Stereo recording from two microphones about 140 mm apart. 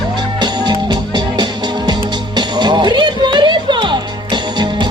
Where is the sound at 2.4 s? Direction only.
30° right (ahead or behind).